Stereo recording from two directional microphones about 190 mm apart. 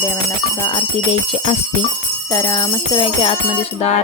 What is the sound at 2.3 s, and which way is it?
Speech, 20° left (ahead or behind).